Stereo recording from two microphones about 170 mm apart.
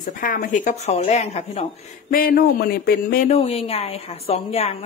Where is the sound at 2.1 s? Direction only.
60° left (ahead or behind).